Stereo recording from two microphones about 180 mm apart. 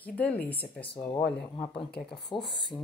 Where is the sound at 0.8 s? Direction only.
30° left (ahead or behind).